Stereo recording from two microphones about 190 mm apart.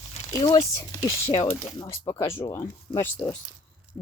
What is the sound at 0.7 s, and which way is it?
Speech, 15° left (ahead or behind).